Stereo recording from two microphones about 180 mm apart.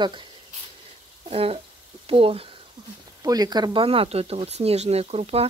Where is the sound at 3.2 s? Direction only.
20° right (ahead or behind).